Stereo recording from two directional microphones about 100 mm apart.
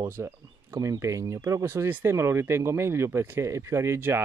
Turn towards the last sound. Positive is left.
turn(degrees=-25)  # may be behind; listen again after turning